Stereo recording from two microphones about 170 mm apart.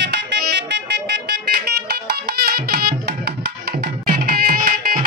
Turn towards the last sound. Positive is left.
turn(degrees=-55)  # may be behind; listen again after turning